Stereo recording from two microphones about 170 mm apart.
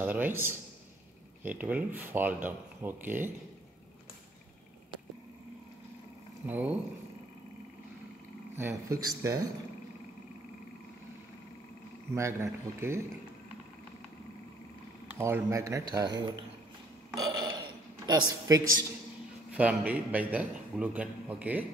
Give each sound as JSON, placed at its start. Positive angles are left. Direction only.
{"t": 0.0, "sound": "a man's voice", "side_deg": -10}
{"t": 6.4, "sound": "a man's voice", "side_deg": -10}
{"t": 8.5, "sound": "speech", "side_deg": -15}
{"t": 12.1, "sound": "a man's voice", "side_deg": -15}
{"t": 15.1, "sound": "speech", "side_deg": -15}
{"t": 18.0, "sound": "speech", "side_deg": -20}
{"t": 19.5, "sound": "a man's voice", "side_deg": -10}